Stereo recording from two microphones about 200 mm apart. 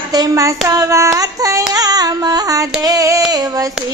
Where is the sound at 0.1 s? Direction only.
15° right (ahead or behind).